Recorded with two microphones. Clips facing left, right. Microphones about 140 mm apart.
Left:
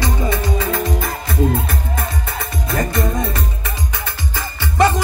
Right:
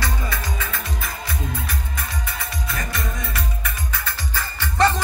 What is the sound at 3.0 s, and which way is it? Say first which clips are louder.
Music: left 9 dB; 40° left (ahead or behind).